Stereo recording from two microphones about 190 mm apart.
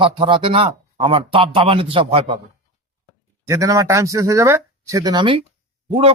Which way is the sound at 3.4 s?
15° right (ahead or behind).